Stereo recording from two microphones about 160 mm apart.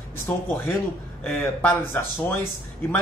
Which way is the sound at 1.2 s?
10° left (ahead or behind).